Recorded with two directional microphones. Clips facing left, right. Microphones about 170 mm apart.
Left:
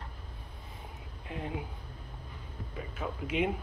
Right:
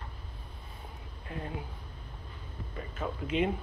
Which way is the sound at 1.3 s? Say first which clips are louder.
Left 1 dB; 15° left (ahead or behind).